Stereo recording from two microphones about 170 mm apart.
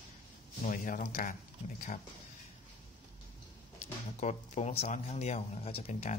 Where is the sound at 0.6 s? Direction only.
50° left (ahead or behind).